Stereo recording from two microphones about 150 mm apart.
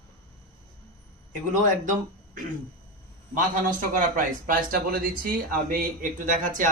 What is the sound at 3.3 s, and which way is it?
Speech, 60° right (ahead or behind).